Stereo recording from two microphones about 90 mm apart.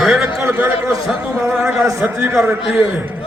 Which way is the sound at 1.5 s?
25° right (ahead or behind).